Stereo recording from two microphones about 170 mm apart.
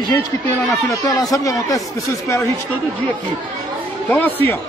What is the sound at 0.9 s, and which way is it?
Speech, 20° left (ahead or behind).